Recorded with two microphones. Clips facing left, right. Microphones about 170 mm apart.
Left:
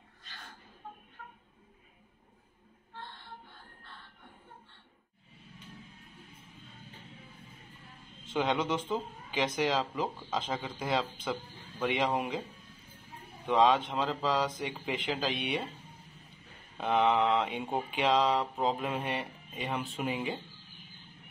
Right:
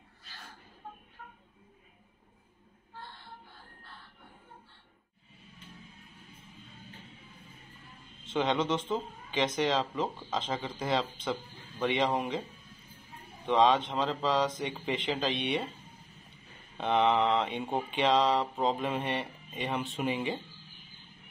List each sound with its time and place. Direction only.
8.3 s speech: 5° left (ahead or behind)
13.5 s speech: centre (ahead or behind)
16.7 s speech: 5° left (ahead or behind)